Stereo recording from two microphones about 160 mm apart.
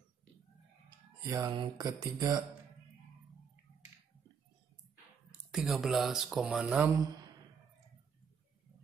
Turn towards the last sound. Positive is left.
turn(degrees=-5)  # may be behind; listen again after turning